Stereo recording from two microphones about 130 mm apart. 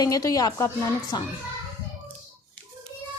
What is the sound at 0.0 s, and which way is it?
Speech, 30° left (ahead or behind).